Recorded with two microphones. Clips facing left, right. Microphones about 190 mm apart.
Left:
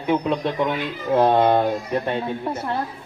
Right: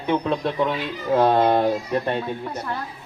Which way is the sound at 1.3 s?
Centre (ahead or behind).